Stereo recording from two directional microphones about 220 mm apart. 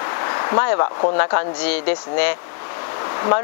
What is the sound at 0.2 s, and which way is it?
Speech, 20° left (ahead or behind).